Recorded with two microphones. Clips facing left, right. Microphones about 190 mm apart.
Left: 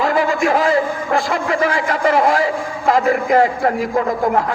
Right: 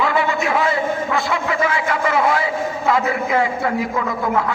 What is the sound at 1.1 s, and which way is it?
A man's voice, 45° left (ahead or behind).